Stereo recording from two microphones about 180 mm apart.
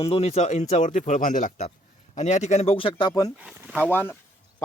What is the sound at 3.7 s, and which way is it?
Speech, 10° left (ahead or behind).